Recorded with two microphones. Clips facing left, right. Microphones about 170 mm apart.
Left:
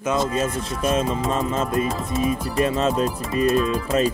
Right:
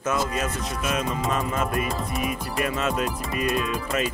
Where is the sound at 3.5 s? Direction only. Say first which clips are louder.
Left 6 dB; 30° left (ahead or behind).